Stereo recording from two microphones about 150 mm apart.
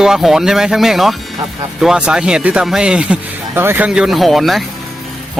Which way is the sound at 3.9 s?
5° right (ahead or behind).